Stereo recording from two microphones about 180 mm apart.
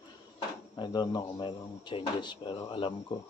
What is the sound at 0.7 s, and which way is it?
Speech, 25° left (ahead or behind).